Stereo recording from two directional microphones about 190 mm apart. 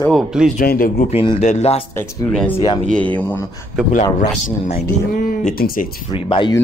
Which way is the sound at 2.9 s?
10° left (ahead or behind).